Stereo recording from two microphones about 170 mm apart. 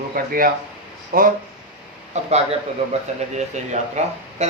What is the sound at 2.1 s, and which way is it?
Speech, 40° right (ahead or behind).